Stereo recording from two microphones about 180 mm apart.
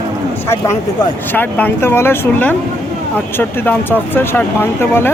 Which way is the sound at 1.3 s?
10° left (ahead or behind).